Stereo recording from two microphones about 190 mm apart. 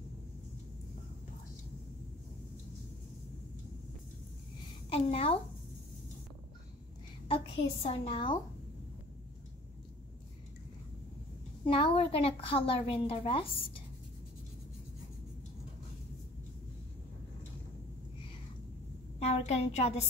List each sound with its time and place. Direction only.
4.8 s a woman's voice: 30° left (ahead or behind)
7.2 s a child's voice: 30° left (ahead or behind)
11.6 s a woman's voice: 30° left (ahead or behind)
19.1 s a sound: 35° left (ahead or behind)